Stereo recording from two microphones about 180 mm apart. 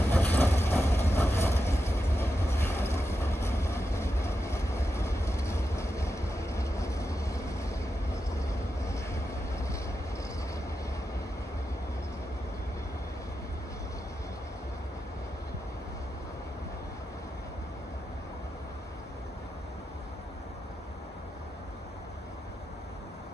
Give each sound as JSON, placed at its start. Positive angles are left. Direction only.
{"t": 0.1, "sound": "vehicle", "side_deg": 10}
{"t": 8.8, "sound": "vehicle", "side_deg": 15}